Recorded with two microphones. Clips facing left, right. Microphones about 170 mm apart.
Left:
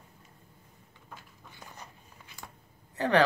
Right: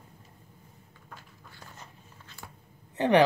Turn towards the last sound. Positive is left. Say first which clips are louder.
# right 3 dB
turn(degrees=-20)  # may be behind; listen again after turning